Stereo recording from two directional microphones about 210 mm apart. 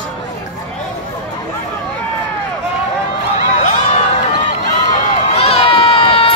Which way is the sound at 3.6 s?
35° left (ahead or behind).